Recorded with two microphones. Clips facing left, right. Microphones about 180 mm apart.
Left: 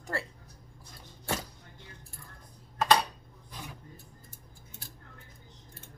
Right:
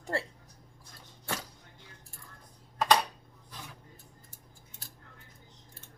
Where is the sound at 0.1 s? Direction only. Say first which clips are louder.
Right 2 dB; 30° right (ahead or behind).